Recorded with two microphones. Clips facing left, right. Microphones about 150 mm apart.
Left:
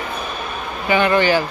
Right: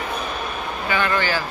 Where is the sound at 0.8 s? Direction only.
20° left (ahead or behind).